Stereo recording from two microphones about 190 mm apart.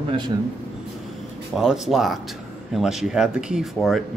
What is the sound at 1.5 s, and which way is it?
Speech, centre (ahead or behind).